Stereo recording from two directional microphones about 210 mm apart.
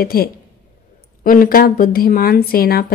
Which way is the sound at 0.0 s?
45° left (ahead or behind).